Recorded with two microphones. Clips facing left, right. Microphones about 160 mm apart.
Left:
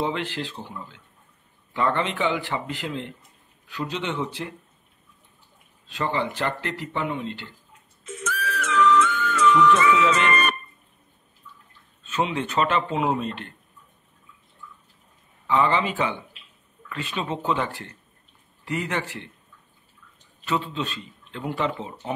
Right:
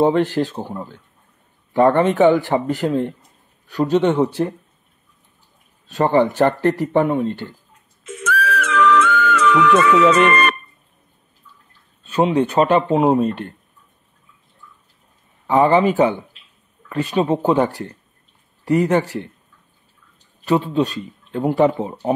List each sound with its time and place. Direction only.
0.0 s a man's voice: 45° right (ahead or behind)
5.9 s a man's voice: 45° right (ahead or behind)
8.0 s music: 80° right
12.0 s speech: 40° right (ahead or behind)
15.4 s speech: 45° right (ahead or behind)
20.4 s speech: 40° right (ahead or behind)